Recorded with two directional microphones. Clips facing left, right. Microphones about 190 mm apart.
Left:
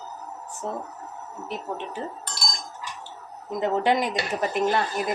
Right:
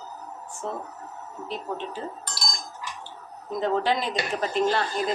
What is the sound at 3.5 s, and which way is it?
A woman's voice, 15° left (ahead or behind).